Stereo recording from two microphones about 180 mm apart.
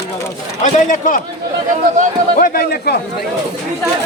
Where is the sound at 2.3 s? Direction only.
50° left (ahead or behind).